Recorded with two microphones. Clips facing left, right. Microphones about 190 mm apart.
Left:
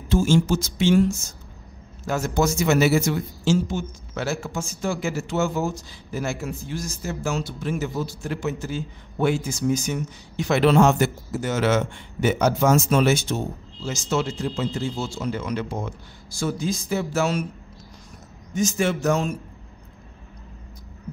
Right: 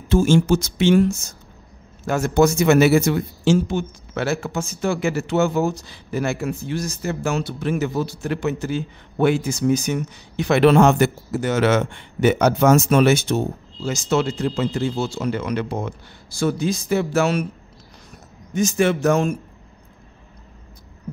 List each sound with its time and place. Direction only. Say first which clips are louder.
0.1 s speech: right 4 dB; 60° right (ahead or behind)
18.5 s speech: right 4 dB; 60° right (ahead or behind)